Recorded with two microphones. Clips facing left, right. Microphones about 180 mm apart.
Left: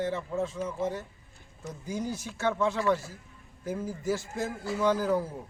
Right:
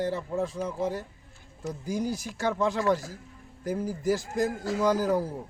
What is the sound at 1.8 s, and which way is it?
Speech, 10° right (ahead or behind).